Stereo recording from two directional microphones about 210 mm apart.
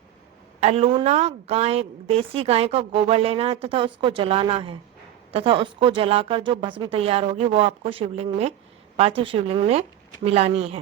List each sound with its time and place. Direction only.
0.6 s a woman's voice: 30° right (ahead or behind)